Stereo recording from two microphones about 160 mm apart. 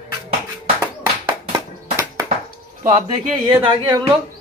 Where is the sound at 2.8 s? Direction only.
50° right (ahead or behind).